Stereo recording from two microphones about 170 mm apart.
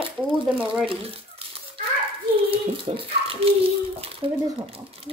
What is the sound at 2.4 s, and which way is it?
Speech, 35° right (ahead or behind).